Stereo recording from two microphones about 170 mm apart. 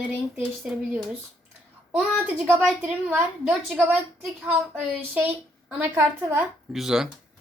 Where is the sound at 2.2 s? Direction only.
5° right (ahead or behind).